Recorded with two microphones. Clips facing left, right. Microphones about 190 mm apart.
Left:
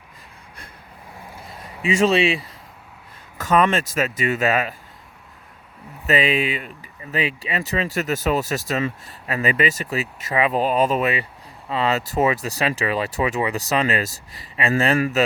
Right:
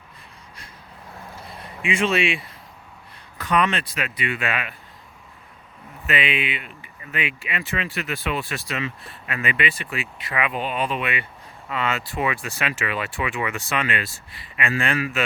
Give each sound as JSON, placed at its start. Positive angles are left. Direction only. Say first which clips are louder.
{"t": 1.8, "sound": "speech", "louder": "left 4 dB", "side_deg": 40}
{"t": 6.1, "sound": "speech", "louder": "left 5 dB", "side_deg": 40}